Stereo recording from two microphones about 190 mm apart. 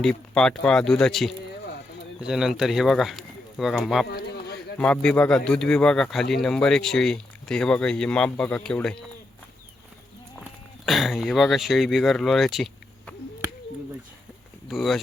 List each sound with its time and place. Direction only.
0.0 s speech: 5° left (ahead or behind)
4.1 s a sound: 60° left (ahead or behind)
4.8 s a man's voice: 5° left (ahead or behind)
10.8 s speech: centre (ahead or behind)
14.7 s speech: centre (ahead or behind)